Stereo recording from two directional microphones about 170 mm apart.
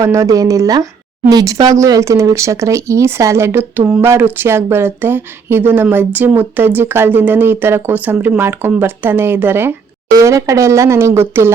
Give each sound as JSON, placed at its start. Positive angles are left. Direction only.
{"t": 0.0, "sound": "speech", "side_deg": -20}